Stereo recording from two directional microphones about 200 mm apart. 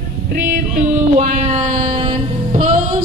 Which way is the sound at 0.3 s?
40° right (ahead or behind).